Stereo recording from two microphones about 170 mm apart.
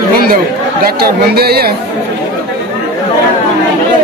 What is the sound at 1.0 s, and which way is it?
Speech, 70° right (ahead or behind).